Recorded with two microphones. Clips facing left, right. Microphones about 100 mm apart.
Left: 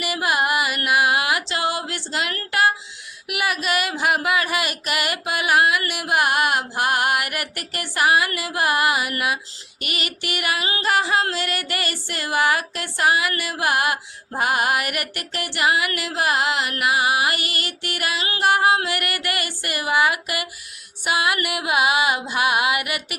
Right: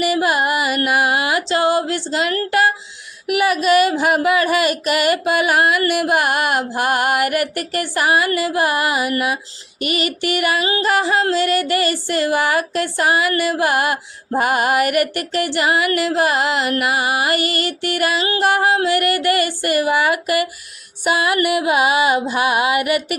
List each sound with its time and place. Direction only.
0.0 s carnatic music: 35° right (ahead or behind)
3.2 s music: 35° right (ahead or behind)